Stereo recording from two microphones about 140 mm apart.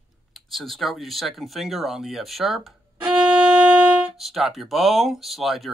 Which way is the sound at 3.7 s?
Centre (ahead or behind).